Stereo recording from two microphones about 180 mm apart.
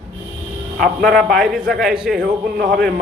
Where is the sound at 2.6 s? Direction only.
50° right (ahead or behind).